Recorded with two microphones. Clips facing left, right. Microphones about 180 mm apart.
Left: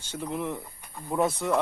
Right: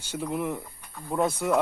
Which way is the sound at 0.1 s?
5° right (ahead or behind).